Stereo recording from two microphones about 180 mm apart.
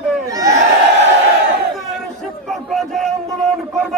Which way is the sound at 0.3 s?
20° right (ahead or behind).